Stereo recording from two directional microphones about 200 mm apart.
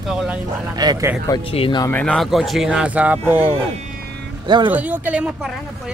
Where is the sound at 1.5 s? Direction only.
25° left (ahead or behind).